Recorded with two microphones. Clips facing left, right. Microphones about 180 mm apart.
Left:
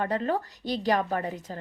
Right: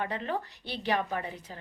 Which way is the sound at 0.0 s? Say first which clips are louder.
Left 6 dB; 45° left (ahead or behind).